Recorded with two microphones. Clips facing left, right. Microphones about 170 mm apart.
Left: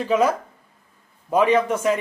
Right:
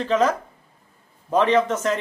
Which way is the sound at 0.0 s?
10° left (ahead or behind).